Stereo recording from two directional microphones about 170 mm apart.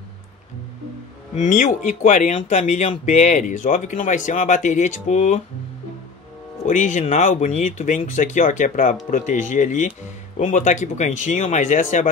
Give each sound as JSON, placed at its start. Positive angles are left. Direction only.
{"t": 1.3, "sound": "speech", "side_deg": 45}
{"t": 6.7, "sound": "speech", "side_deg": 50}